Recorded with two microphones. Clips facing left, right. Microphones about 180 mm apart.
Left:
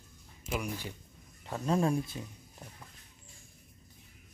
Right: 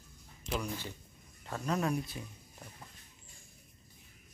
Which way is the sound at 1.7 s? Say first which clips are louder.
Left 4 dB; 30° left (ahead or behind).